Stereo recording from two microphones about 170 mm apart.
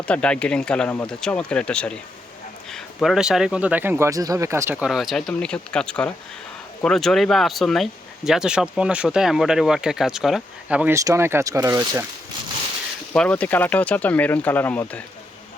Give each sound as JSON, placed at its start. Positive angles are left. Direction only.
{"t": 0.0, "sound": "speech", "side_deg": 5}
{"t": 13.1, "sound": "speech", "side_deg": 10}